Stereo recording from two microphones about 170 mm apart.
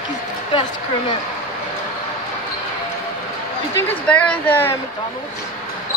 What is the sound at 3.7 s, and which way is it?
Speech, 10° left (ahead or behind).